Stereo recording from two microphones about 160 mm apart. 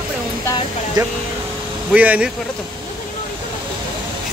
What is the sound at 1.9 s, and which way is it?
Speech, 10° right (ahead or behind).